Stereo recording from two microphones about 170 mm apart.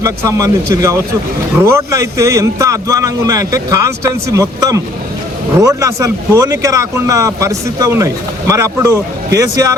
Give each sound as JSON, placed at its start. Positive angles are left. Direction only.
{"t": 0.0, "sound": "speech", "side_deg": -20}